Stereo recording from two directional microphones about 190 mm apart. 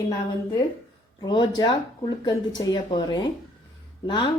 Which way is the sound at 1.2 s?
25° left (ahead or behind).